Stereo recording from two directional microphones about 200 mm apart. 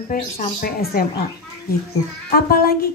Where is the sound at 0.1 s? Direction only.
45° left (ahead or behind).